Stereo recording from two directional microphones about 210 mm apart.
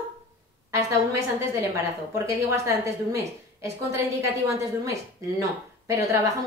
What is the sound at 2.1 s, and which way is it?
A woman's voice, 15° right (ahead or behind).